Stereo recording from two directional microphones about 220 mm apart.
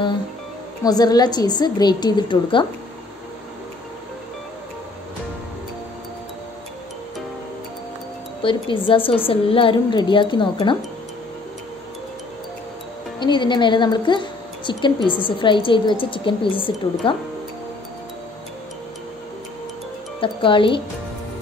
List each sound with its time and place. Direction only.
0.8 s a woman's voice: 15° left (ahead or behind)
8.4 s a woman's voice: 25° left (ahead or behind)
13.2 s a woman's voice: 20° left (ahead or behind)
20.2 s speech: 25° left (ahead or behind)